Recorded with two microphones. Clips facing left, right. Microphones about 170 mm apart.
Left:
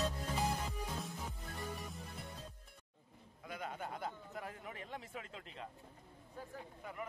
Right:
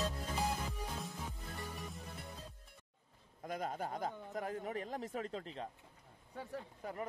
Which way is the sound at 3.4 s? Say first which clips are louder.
Right 5 dB; 40° right (ahead or behind).